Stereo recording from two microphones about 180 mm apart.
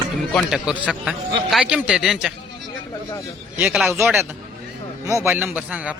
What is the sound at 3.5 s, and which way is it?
Speech, 5° right (ahead or behind).